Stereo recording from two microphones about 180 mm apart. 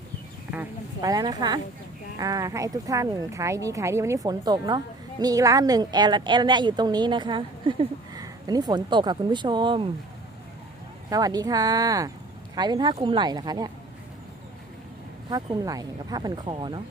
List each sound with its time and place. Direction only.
0.5 s speech: 10° right (ahead or behind)
1.1 s a woman's voice: 20° right (ahead or behind)
11.1 s a woman's voice: 20° right (ahead or behind)
15.3 s a woman's voice: 20° right (ahead or behind)